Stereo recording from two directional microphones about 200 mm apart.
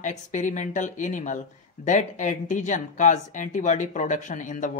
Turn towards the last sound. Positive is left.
turn(degrees=40)  # may be behind; listen again after turning